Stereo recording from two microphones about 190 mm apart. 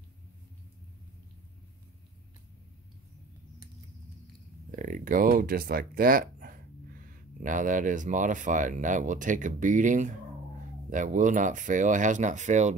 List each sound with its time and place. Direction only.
4.6 s speech: 45° right (ahead or behind)